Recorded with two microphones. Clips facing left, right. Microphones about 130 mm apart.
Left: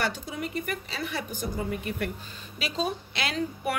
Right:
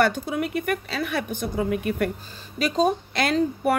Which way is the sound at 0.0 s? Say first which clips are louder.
Right 9 dB; 60° right (ahead or behind).